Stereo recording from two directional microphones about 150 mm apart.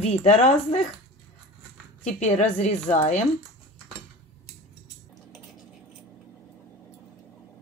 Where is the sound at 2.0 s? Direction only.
50° left (ahead or behind).